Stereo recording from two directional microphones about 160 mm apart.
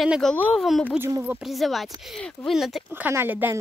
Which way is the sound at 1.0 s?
15° right (ahead or behind).